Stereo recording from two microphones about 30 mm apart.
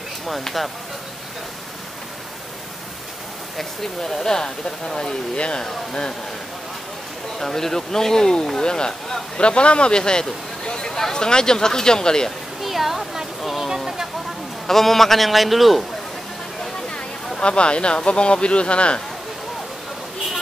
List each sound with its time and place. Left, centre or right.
4.0 s speech: centre
5.3 s speech: left
5.6 s speech: left
7.3 s speech: centre
9.4 s speech: left
12.6 s a sound: centre
14.7 s a man's voice: centre
17.4 s speech: left